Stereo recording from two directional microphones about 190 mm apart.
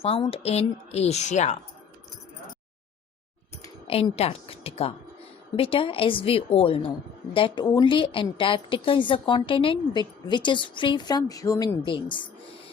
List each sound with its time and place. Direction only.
0.0 s a woman's voice: 30° left (ahead or behind)
3.8 s a woman's voice: 30° left (ahead or behind)